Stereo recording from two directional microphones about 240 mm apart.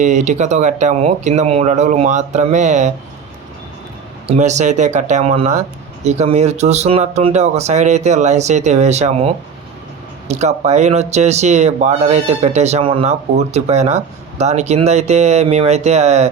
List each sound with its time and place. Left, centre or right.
0.0 s speech: right
4.3 s speech: right